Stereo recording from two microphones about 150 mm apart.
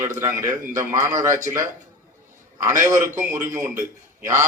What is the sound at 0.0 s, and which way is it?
A man's voice, 20° right (ahead or behind).